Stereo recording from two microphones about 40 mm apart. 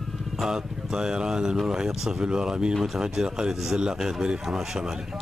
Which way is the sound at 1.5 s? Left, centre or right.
Centre.